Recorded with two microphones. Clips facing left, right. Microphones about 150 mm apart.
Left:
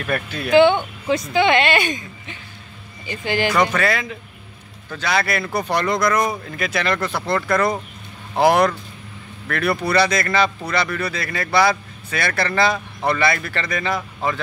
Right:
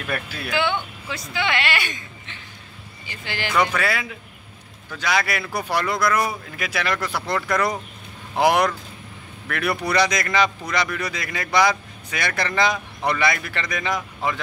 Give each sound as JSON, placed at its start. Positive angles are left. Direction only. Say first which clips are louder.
{"t": 0.0, "sound": "speech", "louder": "left 4 dB", "side_deg": -5}
{"t": 0.5, "sound": "a woman's voice", "louder": "left 11 dB", "side_deg": 20}
{"t": 3.1, "sound": "speech", "louder": "left 10 dB", "side_deg": 15}
{"t": 3.7, "sound": "a man's voice", "louder": "left 4 dB", "side_deg": -10}